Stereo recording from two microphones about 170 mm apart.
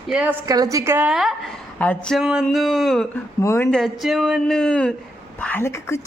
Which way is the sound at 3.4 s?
15° left (ahead or behind).